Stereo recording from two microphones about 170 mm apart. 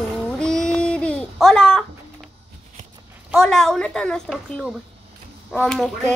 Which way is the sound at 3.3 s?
5° left (ahead or behind).